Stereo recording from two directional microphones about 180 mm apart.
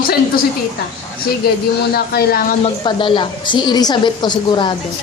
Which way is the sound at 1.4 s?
60° left (ahead or behind).